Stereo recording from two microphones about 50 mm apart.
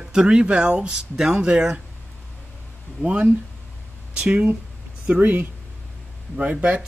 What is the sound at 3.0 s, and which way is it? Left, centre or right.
Speech, right.